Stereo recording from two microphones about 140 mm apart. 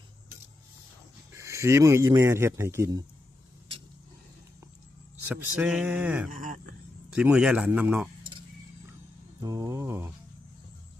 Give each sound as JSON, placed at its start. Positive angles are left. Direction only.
{"t": 1.3, "sound": "a man's voice", "side_deg": -20}
{"t": 5.3, "sound": "speech", "side_deg": -5}
{"t": 6.3, "sound": "speech", "side_deg": -70}
{"t": 7.1, "sound": "speech", "side_deg": -10}
{"t": 8.2, "sound": "keys jangling", "side_deg": -35}
{"t": 9.4, "sound": "mantra", "side_deg": -25}